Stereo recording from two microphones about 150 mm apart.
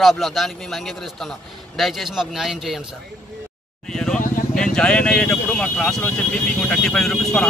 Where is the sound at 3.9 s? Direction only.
5° left (ahead or behind).